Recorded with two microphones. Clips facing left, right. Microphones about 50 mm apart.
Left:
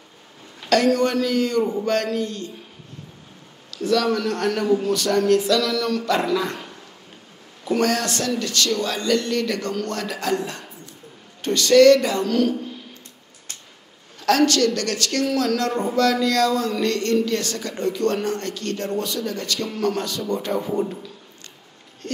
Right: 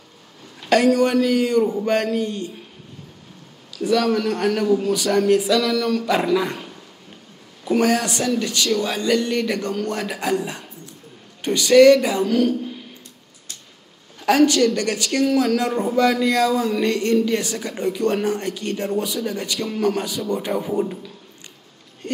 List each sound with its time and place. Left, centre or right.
0.8 s speech: centre
1.6 s a sound: centre
2.0 s speech: centre
3.7 s speech: centre
7.6 s speech: centre
14.2 s speech: centre
22.0 s speech: centre